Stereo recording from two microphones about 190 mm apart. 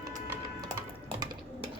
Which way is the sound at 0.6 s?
20° right (ahead or behind).